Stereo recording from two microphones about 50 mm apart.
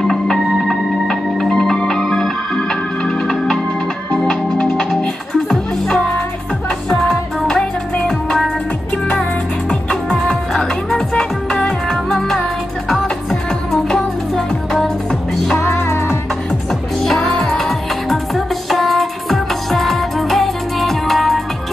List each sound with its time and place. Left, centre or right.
0.0 s organ: centre
0.7 s music: centre
8.9 s music: left
10.1 s music: centre
15.0 s music: centre
15.6 s music: left
17.0 s music: centre